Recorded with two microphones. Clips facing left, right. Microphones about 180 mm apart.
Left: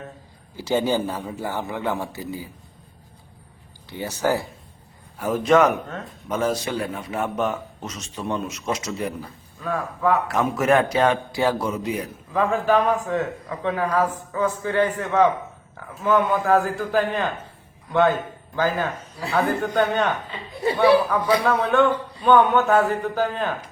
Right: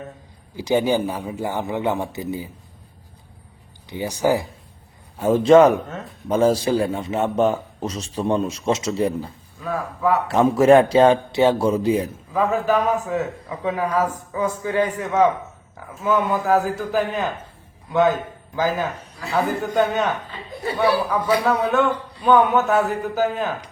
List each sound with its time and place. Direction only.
0.5 s a man's voice: 15° right (ahead or behind)
3.8 s a man's voice: 15° right (ahead or behind)
5.1 s a man's voice: 25° right (ahead or behind)
9.6 s speech: 5° right (ahead or behind)
10.2 s a man's voice: 30° right (ahead or behind)
12.3 s a man's voice: 5° right (ahead or behind)
18.5 s a man's voice: 10° right (ahead or behind)